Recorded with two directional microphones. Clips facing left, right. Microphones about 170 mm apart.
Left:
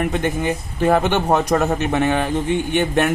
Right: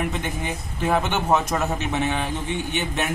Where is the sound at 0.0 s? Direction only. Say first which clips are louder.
Left 7 dB; 60° left (ahead or behind).